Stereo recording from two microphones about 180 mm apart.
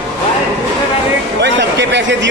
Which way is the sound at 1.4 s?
75° right (ahead or behind).